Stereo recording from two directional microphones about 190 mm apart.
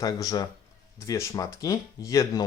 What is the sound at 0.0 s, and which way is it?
Speech, 20° left (ahead or behind).